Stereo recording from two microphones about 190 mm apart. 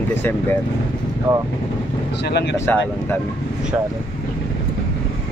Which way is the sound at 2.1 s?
60° left (ahead or behind).